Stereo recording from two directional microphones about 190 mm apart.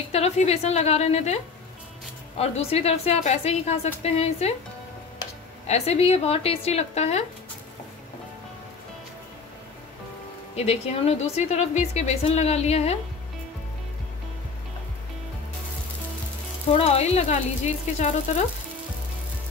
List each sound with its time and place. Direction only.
0.1 s a woman's voice: 35° left (ahead or behind)
5.7 s a woman's voice: 35° left (ahead or behind)
10.5 s a woman's voice: 35° left (ahead or behind)
16.7 s a woman's voice: 30° left (ahead or behind)